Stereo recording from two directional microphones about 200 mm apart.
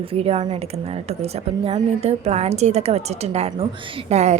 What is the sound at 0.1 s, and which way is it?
A woman's voice, 30° right (ahead or behind).